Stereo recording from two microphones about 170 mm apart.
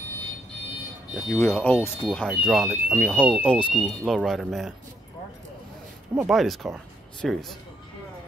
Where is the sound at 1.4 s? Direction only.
10° left (ahead or behind).